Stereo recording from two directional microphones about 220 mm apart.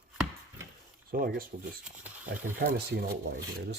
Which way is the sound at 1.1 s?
40° right (ahead or behind).